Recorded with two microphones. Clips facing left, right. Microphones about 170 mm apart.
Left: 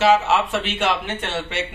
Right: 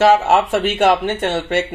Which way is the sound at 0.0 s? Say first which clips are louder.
Right 4 dB; 50° right (ahead or behind).